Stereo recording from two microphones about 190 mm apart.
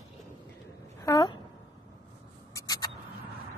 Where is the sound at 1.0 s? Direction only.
20° left (ahead or behind).